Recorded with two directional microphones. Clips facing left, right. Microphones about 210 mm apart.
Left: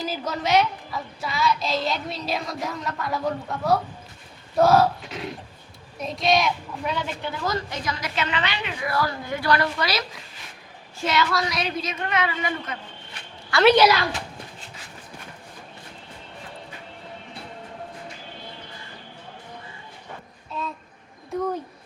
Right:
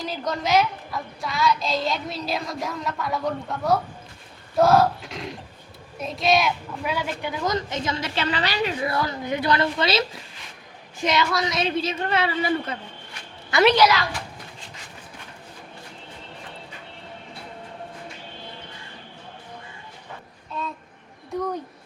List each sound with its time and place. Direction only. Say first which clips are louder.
0.0 s a woman's voice: even; 5° left (ahead or behind); by 8.9 s 35° right (ahead or behind)
8.9 s a child's voice: right 1 dB; 20° right (ahead or behind)
13.5 s a child's voice: even; 20° right (ahead or behind)